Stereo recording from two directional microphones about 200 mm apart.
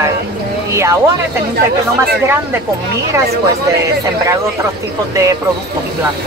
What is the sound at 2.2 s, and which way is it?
Speech, 10° right (ahead or behind).